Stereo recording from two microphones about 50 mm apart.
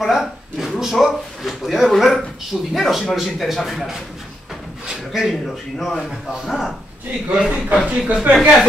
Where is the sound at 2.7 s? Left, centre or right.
Centre.